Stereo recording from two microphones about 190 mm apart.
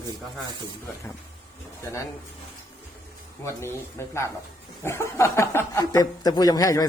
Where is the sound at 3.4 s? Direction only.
15° left (ahead or behind).